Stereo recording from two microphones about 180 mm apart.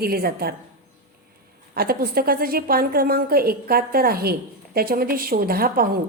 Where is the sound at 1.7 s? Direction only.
55° right (ahead or behind).